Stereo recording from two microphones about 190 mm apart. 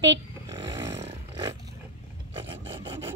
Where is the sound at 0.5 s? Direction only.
25° right (ahead or behind).